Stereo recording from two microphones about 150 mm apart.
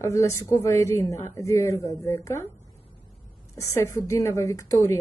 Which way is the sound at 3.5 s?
20° left (ahead or behind).